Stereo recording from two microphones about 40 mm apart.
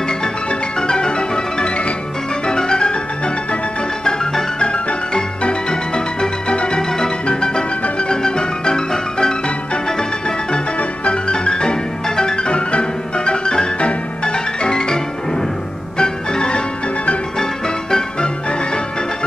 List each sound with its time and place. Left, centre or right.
0.2 s music: centre
4.0 s music: centre
10.8 s music: left
16.0 s music: left